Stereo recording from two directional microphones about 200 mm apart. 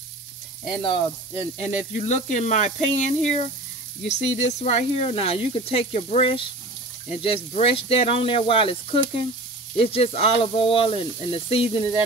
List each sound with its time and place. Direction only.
0.8 s speech: 25° left (ahead or behind)